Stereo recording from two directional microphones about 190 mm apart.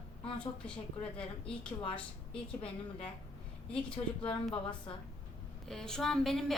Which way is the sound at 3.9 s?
30° left (ahead or behind).